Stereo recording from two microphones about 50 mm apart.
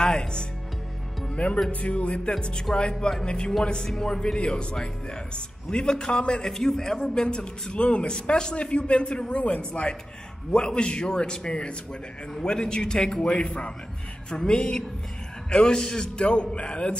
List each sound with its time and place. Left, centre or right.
0.0 s speech: centre
1.3 s a man's voice: left